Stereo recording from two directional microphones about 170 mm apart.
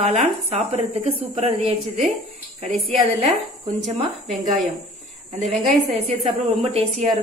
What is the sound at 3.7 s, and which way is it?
Speech, centre (ahead or behind).